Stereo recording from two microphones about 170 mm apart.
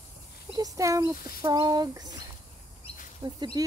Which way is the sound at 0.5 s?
20° right (ahead or behind).